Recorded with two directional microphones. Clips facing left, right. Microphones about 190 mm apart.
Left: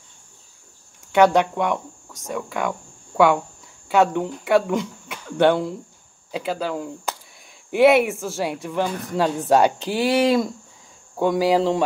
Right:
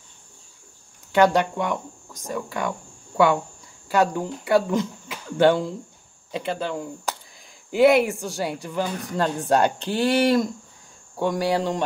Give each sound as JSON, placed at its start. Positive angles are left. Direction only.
{"t": 1.1, "sound": "speech", "side_deg": 0}
{"t": 3.9, "sound": "speech", "side_deg": 0}